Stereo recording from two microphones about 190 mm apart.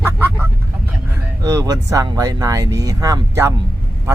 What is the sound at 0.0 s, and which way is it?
Vehicle, 10° right (ahead or behind).